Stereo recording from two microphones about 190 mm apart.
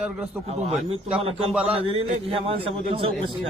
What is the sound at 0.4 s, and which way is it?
A man's voice, 30° right (ahead or behind).